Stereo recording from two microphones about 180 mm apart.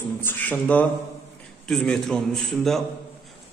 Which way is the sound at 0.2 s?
10° left (ahead or behind).